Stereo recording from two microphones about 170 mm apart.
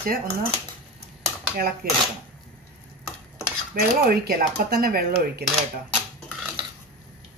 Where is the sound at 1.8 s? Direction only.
60° right (ahead or behind).